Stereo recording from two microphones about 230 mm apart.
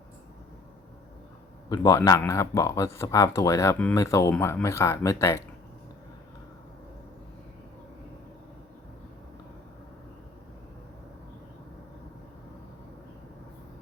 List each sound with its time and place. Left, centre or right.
1.7 s speech: centre